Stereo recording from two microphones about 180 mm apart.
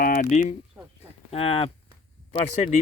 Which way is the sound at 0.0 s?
50° left (ahead or behind).